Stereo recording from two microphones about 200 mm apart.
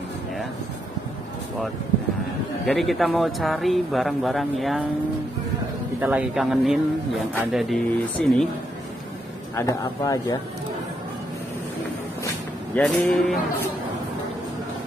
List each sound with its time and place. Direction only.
2.6 s speech: centre (ahead or behind)
5.9 s speech: 10° right (ahead or behind)
9.6 s speech: 15° left (ahead or behind)
12.7 s speech: 5° left (ahead or behind)